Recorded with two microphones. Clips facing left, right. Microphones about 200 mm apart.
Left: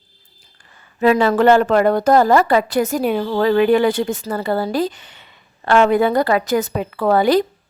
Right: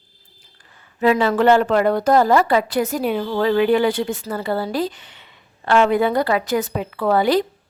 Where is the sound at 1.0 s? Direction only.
45° left (ahead or behind).